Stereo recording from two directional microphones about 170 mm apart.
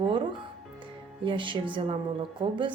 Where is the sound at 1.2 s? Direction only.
30° right (ahead or behind).